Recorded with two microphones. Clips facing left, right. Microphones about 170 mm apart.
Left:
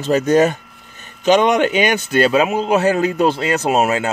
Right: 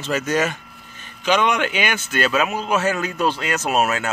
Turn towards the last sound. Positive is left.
turn(degrees=25)  # may be behind; listen again after turning